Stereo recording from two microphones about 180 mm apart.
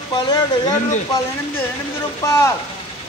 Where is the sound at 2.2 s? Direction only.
15° left (ahead or behind).